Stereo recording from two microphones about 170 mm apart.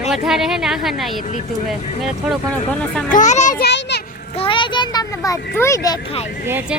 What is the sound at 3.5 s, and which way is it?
Children playing, 80° left.